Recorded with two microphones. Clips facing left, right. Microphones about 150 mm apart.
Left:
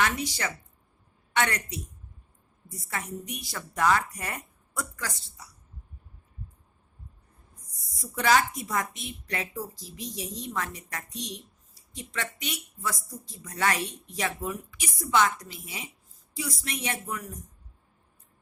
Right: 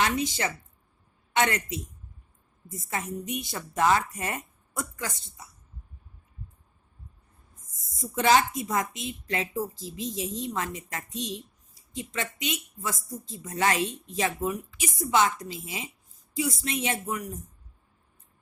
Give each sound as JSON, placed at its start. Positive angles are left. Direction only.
{"t": 0.0, "sound": "a woman's voice", "side_deg": -25}
{"t": 7.8, "sound": "a woman's voice", "side_deg": -20}